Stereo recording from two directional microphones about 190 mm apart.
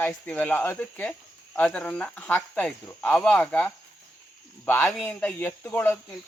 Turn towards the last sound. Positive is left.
turn(degrees=10)  # may be behind; listen again after turning